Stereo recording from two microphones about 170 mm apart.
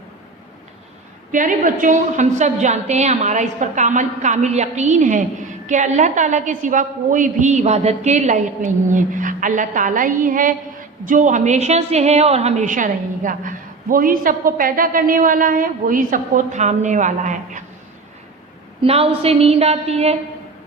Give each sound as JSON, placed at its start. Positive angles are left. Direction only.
{"t": 1.3, "sound": "a woman's voice", "side_deg": -50}
{"t": 18.8, "sound": "a woman's voice", "side_deg": -35}